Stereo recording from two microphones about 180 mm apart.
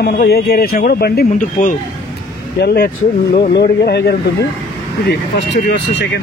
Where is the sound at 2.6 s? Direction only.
60° left (ahead or behind).